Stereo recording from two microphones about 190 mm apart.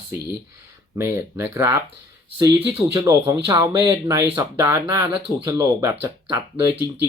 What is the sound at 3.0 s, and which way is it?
Speech, 15° right (ahead or behind).